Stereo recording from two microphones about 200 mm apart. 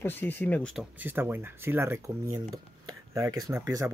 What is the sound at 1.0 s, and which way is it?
Speech, 10° right (ahead or behind).